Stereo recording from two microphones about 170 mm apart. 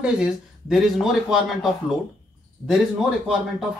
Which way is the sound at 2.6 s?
15° left (ahead or behind).